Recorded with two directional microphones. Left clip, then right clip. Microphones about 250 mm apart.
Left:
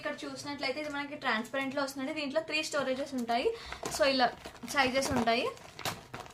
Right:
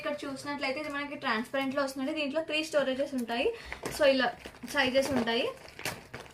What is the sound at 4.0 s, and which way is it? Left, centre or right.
Speech, left.